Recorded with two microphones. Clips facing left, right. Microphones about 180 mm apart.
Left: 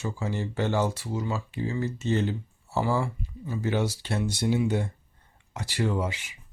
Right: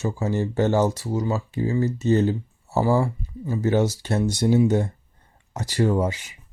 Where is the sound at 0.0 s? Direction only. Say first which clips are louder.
Right 7 dB; 40° right (ahead or behind).